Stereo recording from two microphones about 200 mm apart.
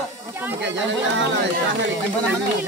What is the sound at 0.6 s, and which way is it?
Speech, 65° right (ahead or behind).